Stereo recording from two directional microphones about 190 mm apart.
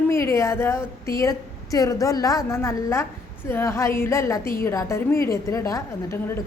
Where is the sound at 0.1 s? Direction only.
15° left (ahead or behind).